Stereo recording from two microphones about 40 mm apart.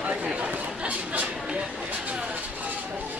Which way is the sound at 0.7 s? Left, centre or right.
Right.